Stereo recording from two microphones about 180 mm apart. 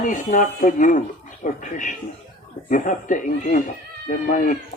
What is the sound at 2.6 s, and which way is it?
Speech, 45° left (ahead or behind).